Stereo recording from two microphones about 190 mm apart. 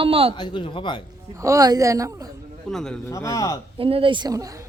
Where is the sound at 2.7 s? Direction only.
5° left (ahead or behind).